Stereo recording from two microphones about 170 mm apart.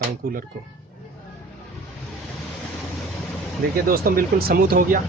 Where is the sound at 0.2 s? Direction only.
60° right (ahead or behind).